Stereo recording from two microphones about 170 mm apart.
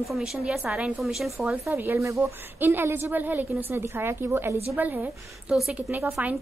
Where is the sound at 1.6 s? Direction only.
15° right (ahead or behind).